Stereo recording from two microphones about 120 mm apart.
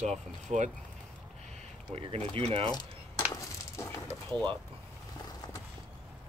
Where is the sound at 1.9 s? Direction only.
55° right (ahead or behind).